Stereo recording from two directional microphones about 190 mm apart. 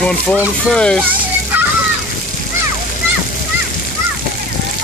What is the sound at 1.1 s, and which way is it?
Children playing, 10° right (ahead or behind).